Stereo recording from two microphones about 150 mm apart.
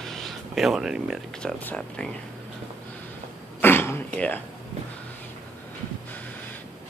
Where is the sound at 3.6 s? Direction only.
15° left (ahead or behind).